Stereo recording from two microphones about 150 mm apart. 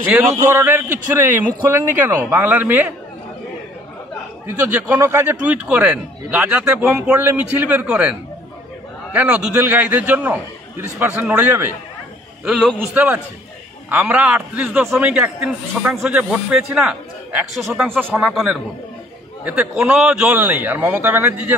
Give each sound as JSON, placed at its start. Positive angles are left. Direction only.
{"t": 0.3, "sound": "a man's voice", "side_deg": -20}
{"t": 4.6, "sound": "a man's voice", "side_deg": -10}
{"t": 12.7, "sound": "a man's voice", "side_deg": -10}
{"t": 18.3, "sound": "a man's voice", "side_deg": 0}